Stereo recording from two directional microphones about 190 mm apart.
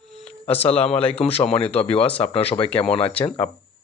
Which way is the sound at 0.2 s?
10° left (ahead or behind).